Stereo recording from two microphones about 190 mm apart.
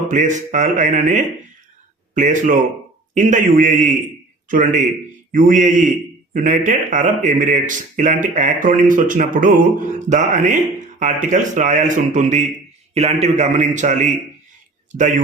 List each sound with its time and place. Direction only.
0.1 s a man's voice: 40° right (ahead or behind)